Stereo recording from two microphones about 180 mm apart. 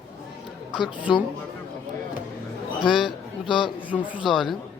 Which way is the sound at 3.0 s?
25° left (ahead or behind).